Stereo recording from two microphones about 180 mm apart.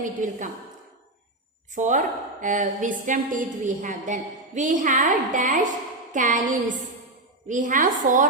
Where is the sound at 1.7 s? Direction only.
45° right (ahead or behind).